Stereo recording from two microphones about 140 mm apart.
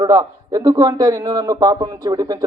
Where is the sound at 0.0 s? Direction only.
30° right (ahead or behind).